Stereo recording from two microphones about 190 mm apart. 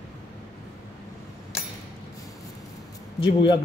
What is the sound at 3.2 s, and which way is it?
Speech, 25° left (ahead or behind).